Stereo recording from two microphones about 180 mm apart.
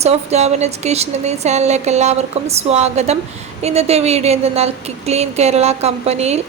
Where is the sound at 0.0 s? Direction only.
35° right (ahead or behind).